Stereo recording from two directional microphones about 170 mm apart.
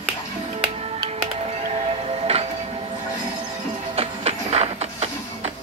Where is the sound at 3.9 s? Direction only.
35° right (ahead or behind).